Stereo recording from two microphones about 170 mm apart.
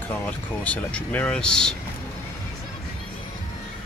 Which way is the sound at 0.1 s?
10° left (ahead or behind).